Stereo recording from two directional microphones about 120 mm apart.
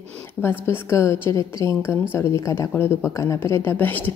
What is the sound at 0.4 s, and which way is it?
Speech, 20° left (ahead or behind).